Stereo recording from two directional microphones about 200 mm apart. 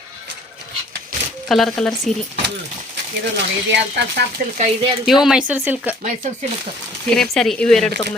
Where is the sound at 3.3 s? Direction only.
60° right (ahead or behind).